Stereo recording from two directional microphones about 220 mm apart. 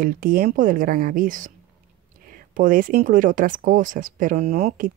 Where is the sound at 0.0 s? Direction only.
40° right (ahead or behind).